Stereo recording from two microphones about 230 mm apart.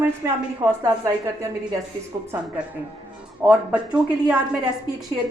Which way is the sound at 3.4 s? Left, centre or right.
Centre.